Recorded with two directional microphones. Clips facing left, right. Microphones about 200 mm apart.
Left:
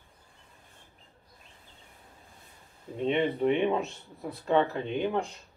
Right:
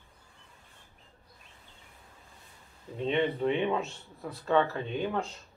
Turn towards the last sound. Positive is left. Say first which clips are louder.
# left 3 dB
turn(degrees=15)  # may be behind; listen again after turning